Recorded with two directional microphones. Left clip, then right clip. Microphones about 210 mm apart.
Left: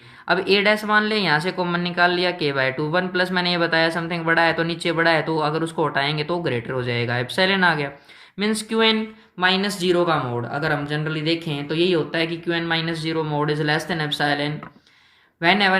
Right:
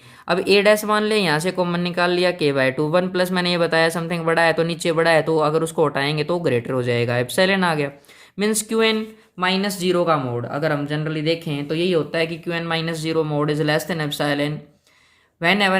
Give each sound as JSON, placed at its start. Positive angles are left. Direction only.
{"t": 0.3, "sound": "speech", "side_deg": -40}